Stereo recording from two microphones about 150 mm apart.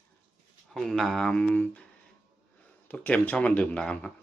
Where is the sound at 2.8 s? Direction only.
10° left (ahead or behind).